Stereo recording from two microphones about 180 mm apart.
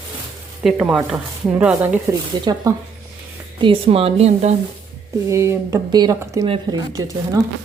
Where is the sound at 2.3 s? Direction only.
25° right (ahead or behind).